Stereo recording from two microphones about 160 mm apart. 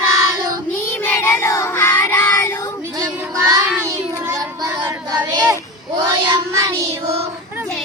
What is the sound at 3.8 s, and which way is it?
Child singing, 20° right (ahead or behind).